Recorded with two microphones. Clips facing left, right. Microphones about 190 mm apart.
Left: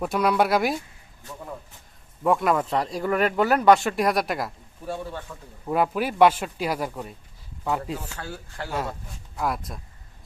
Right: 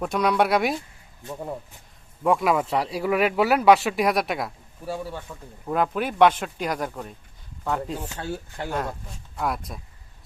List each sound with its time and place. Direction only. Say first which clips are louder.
0.0 s speech: even; centre (ahead or behind)
2.2 s speech: even; centre (ahead or behind)
5.3 s speech: right 1 dB; 10° right (ahead or behind)
5.6 s speech: left 1 dB; 5° left (ahead or behind)
7.9 s speech: right 4 dB; 25° right (ahead or behind)
8.7 s speech: even; 5° left (ahead or behind)